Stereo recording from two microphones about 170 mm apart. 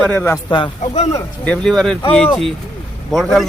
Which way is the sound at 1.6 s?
Centre (ahead or behind).